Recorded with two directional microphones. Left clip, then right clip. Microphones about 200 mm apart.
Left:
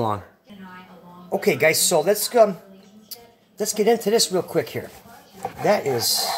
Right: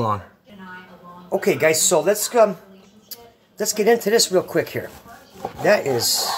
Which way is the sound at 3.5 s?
10° right (ahead or behind).